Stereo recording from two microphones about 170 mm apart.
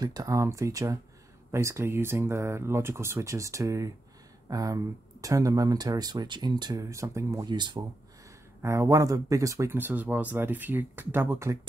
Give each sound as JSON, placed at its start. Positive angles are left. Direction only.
{"t": 0.0, "sound": "speech", "side_deg": -20}